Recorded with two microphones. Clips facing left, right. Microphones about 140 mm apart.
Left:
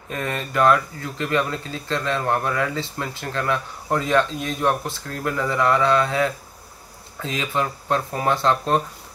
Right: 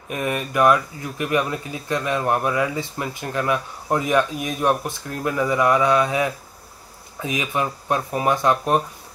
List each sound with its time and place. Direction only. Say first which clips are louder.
0.1 s speech: right 2 dB; 15° right (ahead or behind)